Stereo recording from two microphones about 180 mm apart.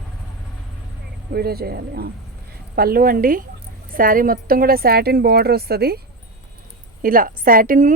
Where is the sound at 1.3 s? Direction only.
60° right (ahead or behind).